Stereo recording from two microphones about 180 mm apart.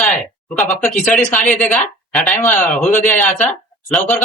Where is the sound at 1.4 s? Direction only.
45° left (ahead or behind).